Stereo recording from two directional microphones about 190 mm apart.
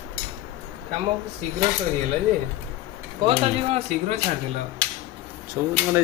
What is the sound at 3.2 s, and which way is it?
Speech, 35° right (ahead or behind).